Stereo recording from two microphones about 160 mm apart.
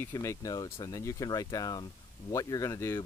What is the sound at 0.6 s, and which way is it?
Speech, 35° left (ahead or behind).